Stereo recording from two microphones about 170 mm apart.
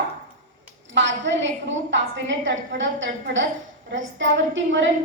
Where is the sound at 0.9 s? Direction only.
90° right.